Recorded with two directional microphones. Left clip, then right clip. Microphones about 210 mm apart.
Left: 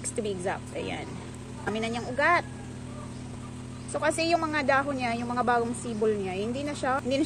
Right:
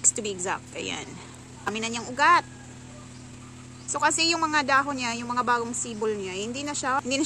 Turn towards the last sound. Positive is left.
turn(degrees=-20)  # may be behind; listen again after turning